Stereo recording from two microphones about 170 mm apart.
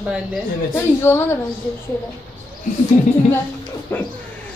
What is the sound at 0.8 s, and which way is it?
Speech, 15° left (ahead or behind).